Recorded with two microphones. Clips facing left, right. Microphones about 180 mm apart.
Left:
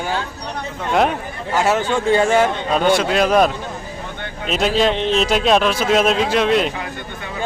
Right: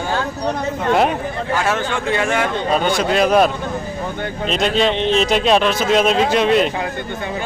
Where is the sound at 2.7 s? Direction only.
Centre (ahead or behind).